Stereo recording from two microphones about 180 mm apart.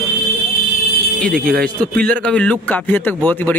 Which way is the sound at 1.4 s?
55° right (ahead or behind).